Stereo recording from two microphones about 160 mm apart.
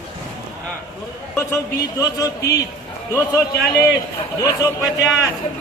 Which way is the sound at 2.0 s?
20° left (ahead or behind).